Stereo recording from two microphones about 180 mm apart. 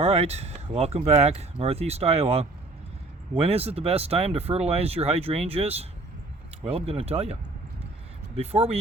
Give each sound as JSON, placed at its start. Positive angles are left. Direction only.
{"t": 0.0, "sound": "speech", "side_deg": -35}
{"t": 8.4, "sound": "speech", "side_deg": -35}